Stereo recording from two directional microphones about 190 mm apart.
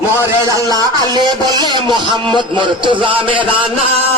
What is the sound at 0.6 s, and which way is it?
Speech, 20° right (ahead or behind).